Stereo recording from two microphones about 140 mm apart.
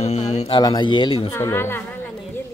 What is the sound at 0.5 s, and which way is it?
Speech, 30° left (ahead or behind).